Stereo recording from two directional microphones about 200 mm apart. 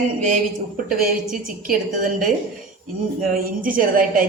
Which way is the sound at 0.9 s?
45° right (ahead or behind).